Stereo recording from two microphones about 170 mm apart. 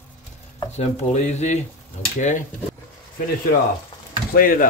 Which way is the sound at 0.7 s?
40° left (ahead or behind).